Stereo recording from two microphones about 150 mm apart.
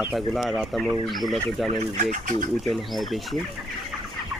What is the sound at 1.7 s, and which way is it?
Speech, 50° right (ahead or behind).